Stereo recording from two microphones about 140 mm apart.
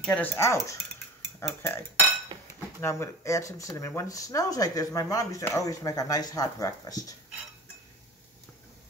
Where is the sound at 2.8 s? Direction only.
20° left (ahead or behind).